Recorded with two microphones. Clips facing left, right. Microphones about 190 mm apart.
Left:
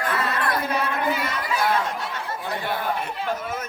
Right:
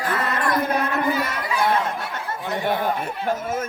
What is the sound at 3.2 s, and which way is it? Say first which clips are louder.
Speech: right 6 dB; 50° right (ahead or behind).